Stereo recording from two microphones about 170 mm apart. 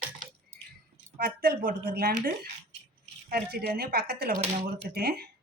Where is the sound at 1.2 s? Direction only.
60° right (ahead or behind).